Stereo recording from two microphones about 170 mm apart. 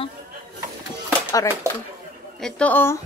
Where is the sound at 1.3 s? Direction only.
20° left (ahead or behind).